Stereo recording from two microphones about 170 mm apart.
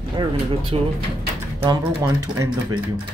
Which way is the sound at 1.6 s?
20° right (ahead or behind).